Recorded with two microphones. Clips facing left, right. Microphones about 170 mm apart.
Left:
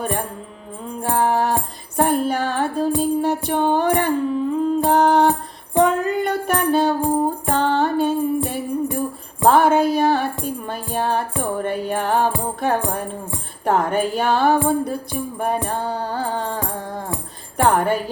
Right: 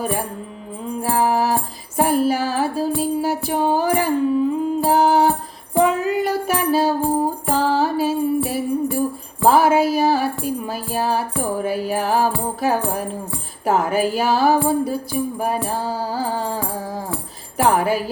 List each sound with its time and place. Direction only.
0.0 s music: 5° right (ahead or behind)